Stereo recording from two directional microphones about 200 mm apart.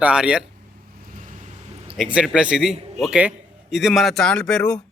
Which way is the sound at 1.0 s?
40° right (ahead or behind).